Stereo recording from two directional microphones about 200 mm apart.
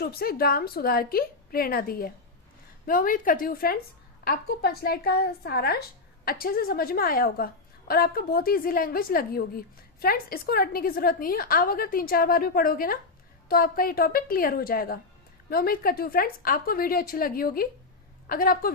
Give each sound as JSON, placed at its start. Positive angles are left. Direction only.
{"t": 0.0, "sound": "a woman's voice", "side_deg": 50}